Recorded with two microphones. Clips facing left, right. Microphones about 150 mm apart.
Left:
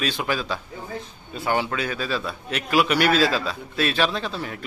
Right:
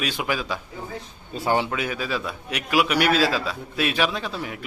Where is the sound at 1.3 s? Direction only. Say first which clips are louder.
Right 2 dB; 35° right (ahead or behind).